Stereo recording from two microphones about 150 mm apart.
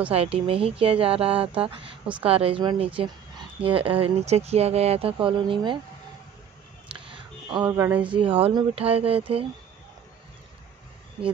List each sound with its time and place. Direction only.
0.1 s speech: 40° right (ahead or behind)
6.9 s a sound: 35° right (ahead or behind); by 8.0 s 20° right (ahead or behind)
8.1 s speech: 35° right (ahead or behind)